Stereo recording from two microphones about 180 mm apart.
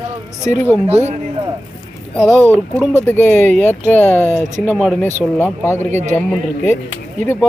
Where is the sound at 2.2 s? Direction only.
10° left (ahead or behind).